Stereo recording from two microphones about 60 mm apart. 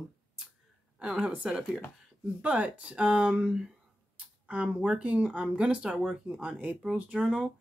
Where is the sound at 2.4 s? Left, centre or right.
Right.